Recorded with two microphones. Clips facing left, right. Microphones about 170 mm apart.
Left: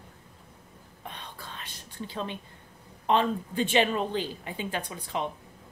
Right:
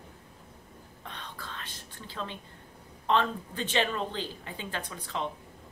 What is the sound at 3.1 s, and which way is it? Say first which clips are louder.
A woman's voice: left 2 dB; 15° left (ahead or behind).